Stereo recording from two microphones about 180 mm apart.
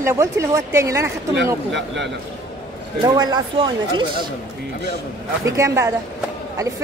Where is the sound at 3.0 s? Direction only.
20° right (ahead or behind).